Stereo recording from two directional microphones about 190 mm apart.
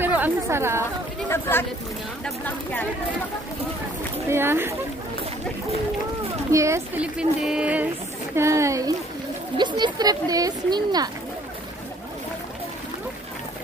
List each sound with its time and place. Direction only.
0.0 s chatter: 10° right (ahead or behind)
1.3 s speech: 10° left (ahead or behind)
4.3 s speech: 10° right (ahead or behind)
6.5 s speech: 15° right (ahead or behind)